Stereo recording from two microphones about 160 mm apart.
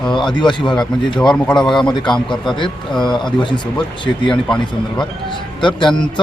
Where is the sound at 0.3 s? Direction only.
30° left (ahead or behind).